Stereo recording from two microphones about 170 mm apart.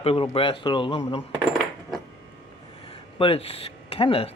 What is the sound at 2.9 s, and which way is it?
Speech, 35° left (ahead or behind).